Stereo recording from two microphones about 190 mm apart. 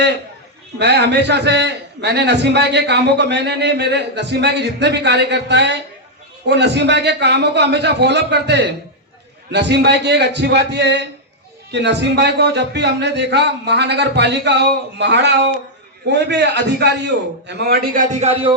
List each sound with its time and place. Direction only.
0.8 s a man's voice: 60° right (ahead or behind); by 18.5 s 35° right (ahead or behind)